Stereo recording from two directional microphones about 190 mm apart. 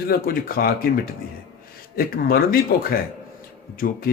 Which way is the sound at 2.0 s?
50° left (ahead or behind).